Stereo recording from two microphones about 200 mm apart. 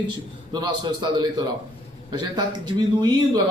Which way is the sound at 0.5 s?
20° right (ahead or behind).